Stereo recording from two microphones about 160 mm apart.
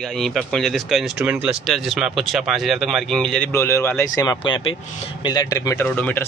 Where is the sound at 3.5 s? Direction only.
15° left (ahead or behind).